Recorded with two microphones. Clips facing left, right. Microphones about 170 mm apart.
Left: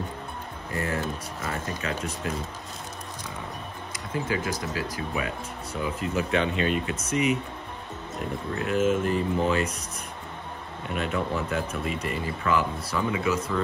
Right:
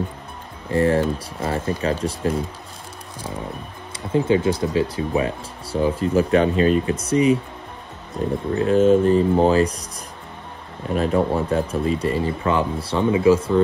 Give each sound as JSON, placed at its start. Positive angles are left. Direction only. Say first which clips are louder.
{"t": 0.7, "sound": "speech", "louder": "right 11 dB", "side_deg": -30}
{"t": 4.1, "sound": "speech", "louder": "right 11 dB", "side_deg": -30}
{"t": 11.0, "sound": "speech", "louder": "right 9 dB", "side_deg": -35}